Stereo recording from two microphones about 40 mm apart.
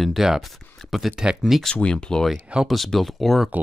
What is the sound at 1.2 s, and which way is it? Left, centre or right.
Speech, right.